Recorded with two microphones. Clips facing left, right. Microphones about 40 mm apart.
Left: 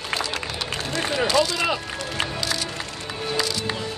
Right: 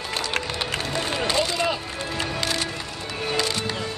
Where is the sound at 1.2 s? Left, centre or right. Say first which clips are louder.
Left 3 dB; right.